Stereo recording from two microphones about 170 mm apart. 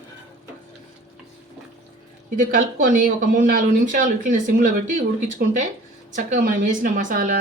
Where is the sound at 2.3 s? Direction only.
50° right (ahead or behind).